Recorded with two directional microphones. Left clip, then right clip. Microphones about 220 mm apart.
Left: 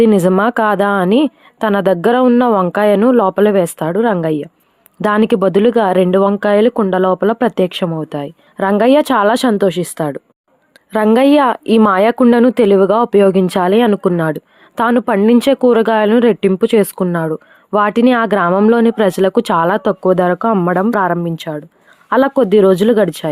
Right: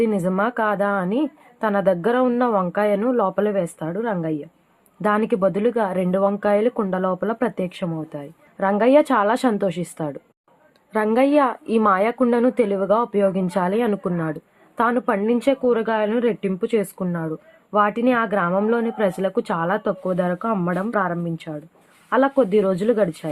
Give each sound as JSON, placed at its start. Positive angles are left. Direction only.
{"t": 0.0, "sound": "speech", "side_deg": 45}